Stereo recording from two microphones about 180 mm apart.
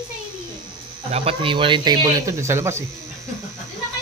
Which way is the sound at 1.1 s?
30° right (ahead or behind).